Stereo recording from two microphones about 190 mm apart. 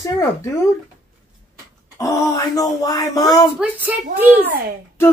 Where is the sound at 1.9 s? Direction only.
15° left (ahead or behind).